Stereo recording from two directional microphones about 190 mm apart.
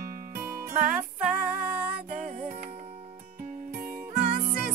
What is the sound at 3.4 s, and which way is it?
Music, 50° right (ahead or behind).